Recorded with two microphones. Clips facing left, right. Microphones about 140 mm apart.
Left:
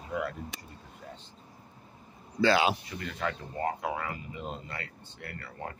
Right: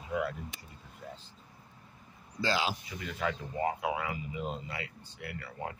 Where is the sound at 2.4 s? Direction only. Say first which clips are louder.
Left 7 dB; 65° left (ahead or behind).